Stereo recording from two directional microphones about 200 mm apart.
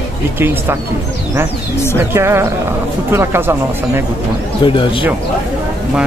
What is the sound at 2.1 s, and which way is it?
Speech, 15° right (ahead or behind).